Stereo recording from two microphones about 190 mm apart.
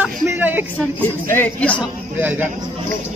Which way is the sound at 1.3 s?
10° left (ahead or behind).